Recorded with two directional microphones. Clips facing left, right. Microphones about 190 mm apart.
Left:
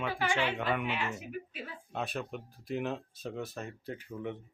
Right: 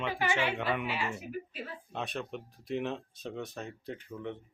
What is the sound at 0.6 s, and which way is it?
Speech, 5° right (ahead or behind).